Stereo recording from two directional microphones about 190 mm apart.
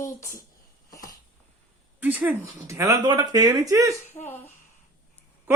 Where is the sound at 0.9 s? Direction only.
20° left (ahead or behind).